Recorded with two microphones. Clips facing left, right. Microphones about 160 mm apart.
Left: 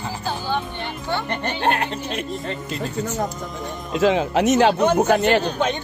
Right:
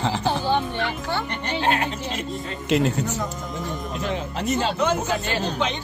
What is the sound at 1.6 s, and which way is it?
Music, 60° left (ahead or behind).